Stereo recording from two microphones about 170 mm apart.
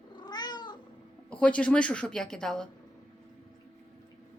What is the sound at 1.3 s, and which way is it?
A woman's voice, 5° left (ahead or behind).